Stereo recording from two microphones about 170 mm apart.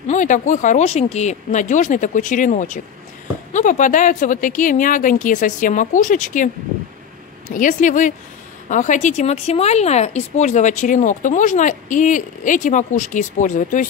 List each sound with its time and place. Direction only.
0.1 s speech: 45° left (ahead or behind)
7.5 s speech: 50° left (ahead or behind)